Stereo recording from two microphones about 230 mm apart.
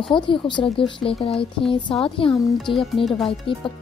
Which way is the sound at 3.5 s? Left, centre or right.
Left.